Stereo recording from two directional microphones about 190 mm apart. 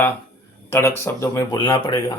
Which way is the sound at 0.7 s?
10° left (ahead or behind).